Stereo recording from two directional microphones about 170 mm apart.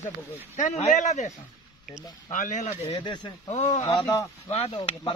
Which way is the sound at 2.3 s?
50° left (ahead or behind).